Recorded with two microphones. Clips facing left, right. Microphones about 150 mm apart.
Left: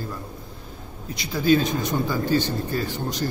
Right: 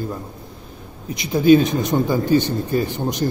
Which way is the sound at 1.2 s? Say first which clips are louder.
Right 7 dB; 20° right (ahead or behind).